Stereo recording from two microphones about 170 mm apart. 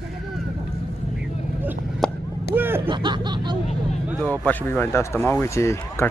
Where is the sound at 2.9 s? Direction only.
25° right (ahead or behind).